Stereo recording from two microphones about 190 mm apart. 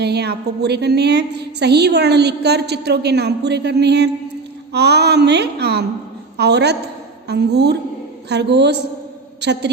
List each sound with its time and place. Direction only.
0.0 s a woman's voice: 60° right (ahead or behind)